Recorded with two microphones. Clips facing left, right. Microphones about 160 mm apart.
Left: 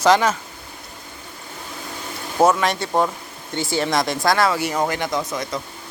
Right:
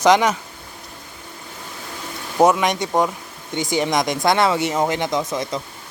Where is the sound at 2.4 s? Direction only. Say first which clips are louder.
Right 1 dB; 15° right (ahead or behind).